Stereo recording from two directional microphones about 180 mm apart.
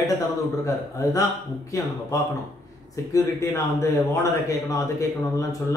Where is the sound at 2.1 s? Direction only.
20° left (ahead or behind).